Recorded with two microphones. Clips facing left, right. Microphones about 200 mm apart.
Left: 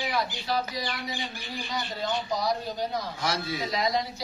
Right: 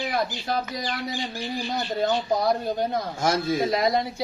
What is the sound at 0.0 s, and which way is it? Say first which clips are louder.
A man's voice: right 3 dB; 50° right (ahead or behind).